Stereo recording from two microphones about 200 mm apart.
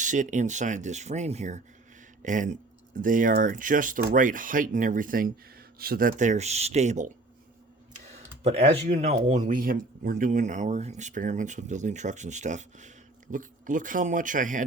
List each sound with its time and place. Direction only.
0.0 s speech: 40° right (ahead or behind)
8.4 s speech: 30° right (ahead or behind)